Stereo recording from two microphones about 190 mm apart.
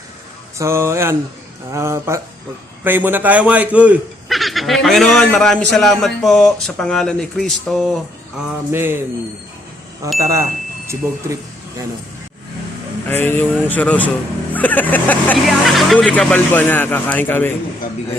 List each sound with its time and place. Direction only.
0.6 s a man's voice: 15° right (ahead or behind)
10.2 s speech: 15° right (ahead or behind)
13.1 s speech: 10° left (ahead or behind)